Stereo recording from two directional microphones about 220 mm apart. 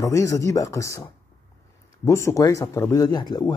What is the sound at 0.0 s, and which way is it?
Speech, 15° left (ahead or behind).